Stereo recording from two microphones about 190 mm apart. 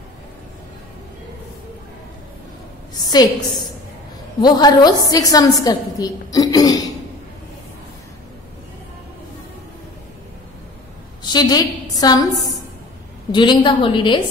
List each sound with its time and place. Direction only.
3.0 s a woman's voice: 20° left (ahead or behind)
4.4 s a woman's voice: 20° left (ahead or behind)
11.3 s a woman's voice: 20° left (ahead or behind)